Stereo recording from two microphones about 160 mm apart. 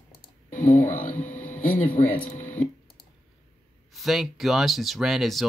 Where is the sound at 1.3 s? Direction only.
55° left (ahead or behind).